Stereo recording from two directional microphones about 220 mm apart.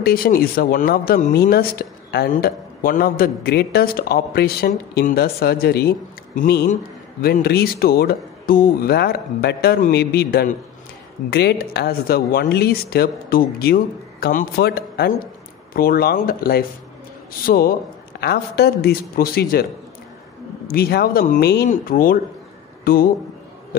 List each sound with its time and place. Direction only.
0.0 s speech: 45° left (ahead or behind)